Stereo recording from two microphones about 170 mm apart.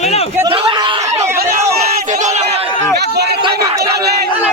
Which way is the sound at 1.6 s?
45° right (ahead or behind).